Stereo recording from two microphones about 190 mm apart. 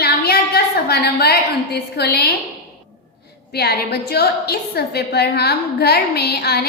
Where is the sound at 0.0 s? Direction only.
55° left (ahead or behind).